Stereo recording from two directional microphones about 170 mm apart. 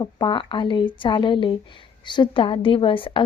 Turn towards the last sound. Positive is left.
turn(degrees=30)  # may be behind; listen again after turning